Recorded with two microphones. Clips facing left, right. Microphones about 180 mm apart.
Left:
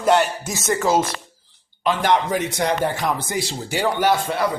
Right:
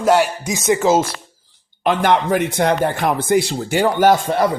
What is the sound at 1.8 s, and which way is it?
A man's voice, 55° right (ahead or behind).